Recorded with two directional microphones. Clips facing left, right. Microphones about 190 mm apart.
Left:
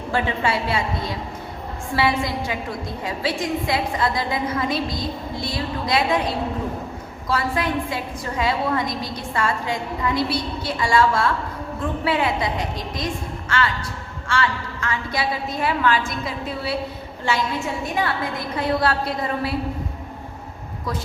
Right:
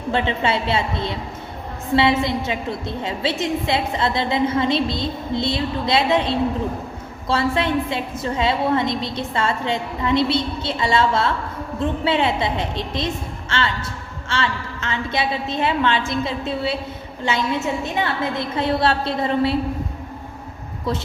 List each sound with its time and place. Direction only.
0.1 s a woman's voice: 25° right (ahead or behind)